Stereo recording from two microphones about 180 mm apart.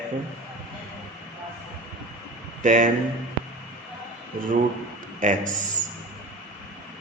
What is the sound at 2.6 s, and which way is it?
Speech, 45° right (ahead or behind).